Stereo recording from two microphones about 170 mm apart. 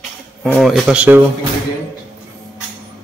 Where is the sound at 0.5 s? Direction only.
Centre (ahead or behind).